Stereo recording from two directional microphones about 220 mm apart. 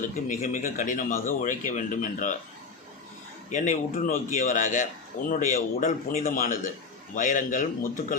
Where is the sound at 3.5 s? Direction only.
35° left (ahead or behind).